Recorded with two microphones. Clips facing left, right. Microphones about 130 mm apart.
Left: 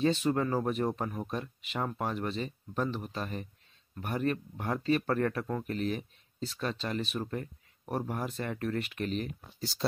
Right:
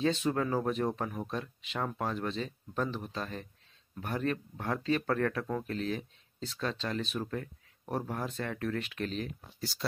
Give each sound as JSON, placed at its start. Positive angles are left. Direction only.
{"t": 0.0, "sound": "speech", "side_deg": 5}
{"t": 9.6, "sound": "speech", "side_deg": 25}